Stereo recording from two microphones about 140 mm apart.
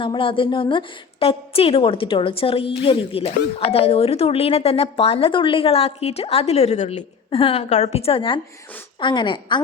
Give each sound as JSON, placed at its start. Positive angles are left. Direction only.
{"t": 0.0, "sound": "a woman's voice", "side_deg": 40}
{"t": 7.3, "sound": "a woman's voice", "side_deg": 40}